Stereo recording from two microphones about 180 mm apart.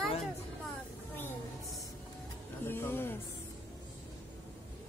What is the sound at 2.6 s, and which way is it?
Music, 10° left (ahead or behind).